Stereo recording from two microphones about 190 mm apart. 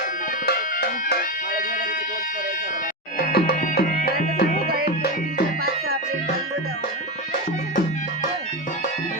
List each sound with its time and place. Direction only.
0.4 s music: 50° left (ahead or behind)
3.2 s music: 50° left (ahead or behind)